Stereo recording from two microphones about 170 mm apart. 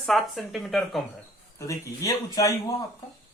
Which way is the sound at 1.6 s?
20° left (ahead or behind).